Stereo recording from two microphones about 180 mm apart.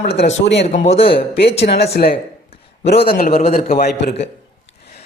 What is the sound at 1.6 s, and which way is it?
A man's voice, 70° left (ahead or behind).